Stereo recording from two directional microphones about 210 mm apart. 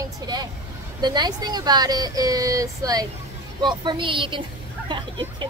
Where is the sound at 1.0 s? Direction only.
20° right (ahead or behind).